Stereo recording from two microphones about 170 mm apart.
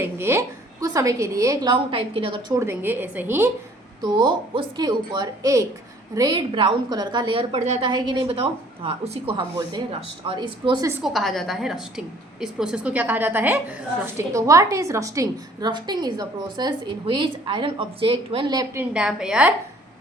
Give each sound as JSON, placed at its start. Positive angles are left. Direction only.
{"t": 0.0, "sound": "a woman's voice", "side_deg": -15}
{"t": 1.7, "sound": "a woman's voice", "side_deg": -30}
{"t": 2.6, "sound": "a woman's voice", "side_deg": -15}
{"t": 4.0, "sound": "a woman's voice", "side_deg": -25}
{"t": 11.0, "sound": "a woman's voice", "side_deg": 0}
{"t": 18.9, "sound": "a woman's voice", "side_deg": -5}